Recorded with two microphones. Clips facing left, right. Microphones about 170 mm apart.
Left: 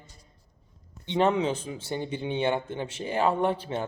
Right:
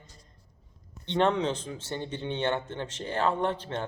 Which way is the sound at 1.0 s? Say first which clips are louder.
Left 1 dB; 10° left (ahead or behind).